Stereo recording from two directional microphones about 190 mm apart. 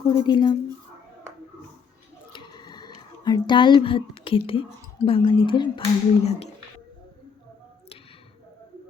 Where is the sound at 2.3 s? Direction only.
25° left (ahead or behind).